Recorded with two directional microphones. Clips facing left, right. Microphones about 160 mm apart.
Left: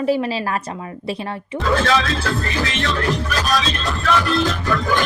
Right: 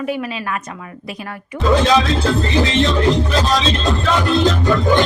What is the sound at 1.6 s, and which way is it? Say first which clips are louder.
Speech: right 4 dB; 15° right (ahead or behind).